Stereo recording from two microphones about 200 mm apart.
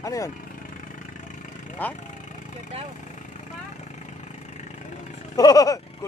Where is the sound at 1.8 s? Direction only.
10° left (ahead or behind).